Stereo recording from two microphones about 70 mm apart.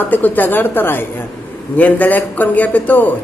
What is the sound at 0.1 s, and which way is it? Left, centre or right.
A man's voice, left.